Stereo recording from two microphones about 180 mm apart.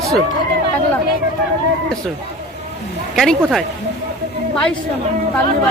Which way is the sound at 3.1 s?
Centre (ahead or behind).